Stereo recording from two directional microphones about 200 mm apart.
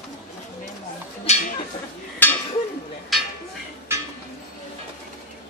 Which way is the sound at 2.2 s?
10° left (ahead or behind).